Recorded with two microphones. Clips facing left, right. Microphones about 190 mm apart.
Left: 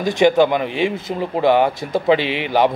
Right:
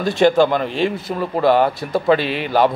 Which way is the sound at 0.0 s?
15° left (ahead or behind).